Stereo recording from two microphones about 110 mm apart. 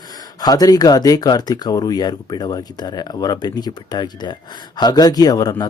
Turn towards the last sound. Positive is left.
turn(degrees=35)  # may be behind; listen again after turning